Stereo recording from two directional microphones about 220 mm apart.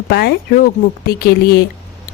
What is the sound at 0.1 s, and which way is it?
A woman's voice, 45° left (ahead or behind).